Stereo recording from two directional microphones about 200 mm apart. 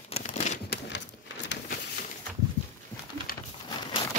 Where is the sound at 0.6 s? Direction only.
60° left (ahead or behind).